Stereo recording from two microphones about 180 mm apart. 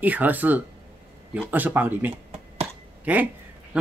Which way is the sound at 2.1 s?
35° right (ahead or behind).